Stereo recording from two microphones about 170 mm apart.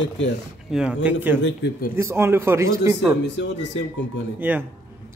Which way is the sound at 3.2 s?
90° left.